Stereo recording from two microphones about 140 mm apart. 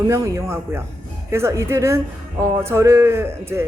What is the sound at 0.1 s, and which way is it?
A woman's voice, 20° right (ahead or behind).